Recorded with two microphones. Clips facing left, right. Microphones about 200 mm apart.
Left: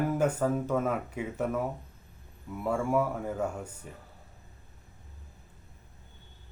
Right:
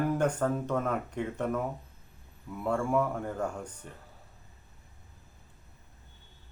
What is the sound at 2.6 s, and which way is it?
Speech, 5° left (ahead or behind).